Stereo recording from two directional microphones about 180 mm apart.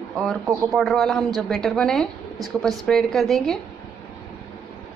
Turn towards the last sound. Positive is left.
turn(degrees=0)  # may be behind; listen again after turning